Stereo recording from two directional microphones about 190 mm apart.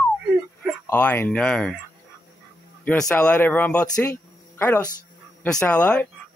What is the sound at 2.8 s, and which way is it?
Speech, 5° left (ahead or behind).